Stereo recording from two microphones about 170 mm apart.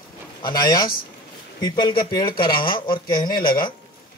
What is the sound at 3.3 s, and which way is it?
Speech, 60° left (ahead or behind).